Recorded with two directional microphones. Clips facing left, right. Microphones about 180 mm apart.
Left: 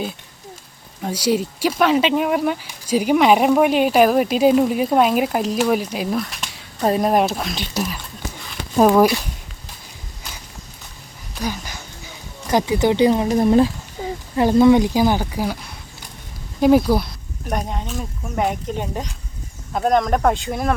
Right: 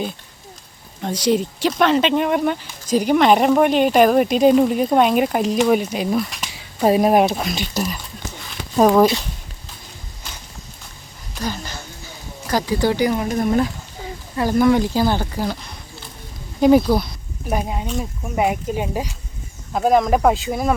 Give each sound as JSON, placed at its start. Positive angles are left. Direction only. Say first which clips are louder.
{"t": 1.0, "sound": "speech", "louder": "right 1 dB", "side_deg": 10}
{"t": 7.7, "sound": "a sound", "louder": "right 1 dB", "side_deg": 0}
{"t": 11.3, "sound": "speech", "louder": "even", "side_deg": 10}
{"t": 17.5, "sound": "speech", "louder": "right 2 dB", "side_deg": -5}